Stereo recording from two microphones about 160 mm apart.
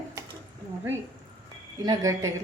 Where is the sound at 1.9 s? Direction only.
20° right (ahead or behind).